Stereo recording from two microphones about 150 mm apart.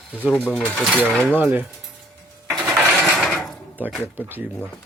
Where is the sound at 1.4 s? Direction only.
10° right (ahead or behind).